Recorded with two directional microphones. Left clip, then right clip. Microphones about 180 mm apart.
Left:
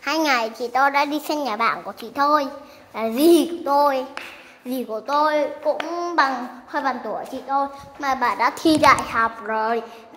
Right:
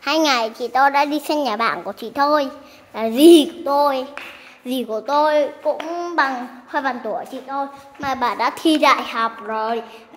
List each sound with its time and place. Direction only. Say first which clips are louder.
0.0 s a child's voice: right 3 dB; 20° right (ahead or behind)
1.4 s a child's voice: right 2 dB; 30° right (ahead or behind)
3.6 s a child's voice: right 1 dB; 15° right (ahead or behind)
4.6 s a child's voice: right 3 dB; 30° right (ahead or behind)
5.9 s a child's voice: right 1 dB; 15° right (ahead or behind)
6.1 s a sound: even; 5° right (ahead or behind)
6.7 s a child's voice: right 2 dB; 15° right (ahead or behind)
7.5 s a woman's voice: left 3 dB; 10° left (ahead or behind)
8.2 s a child's voice: right 1 dB; 20° right (ahead or behind)
8.5 s a child's voice: even; 5° right (ahead or behind)